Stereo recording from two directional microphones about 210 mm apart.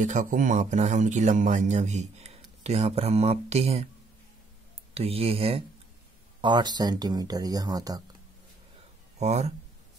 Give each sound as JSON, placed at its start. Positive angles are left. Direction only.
{"t": 0.0, "sound": "speech", "side_deg": -35}
{"t": 4.9, "sound": "speech", "side_deg": -30}
{"t": 9.2, "sound": "speech", "side_deg": -30}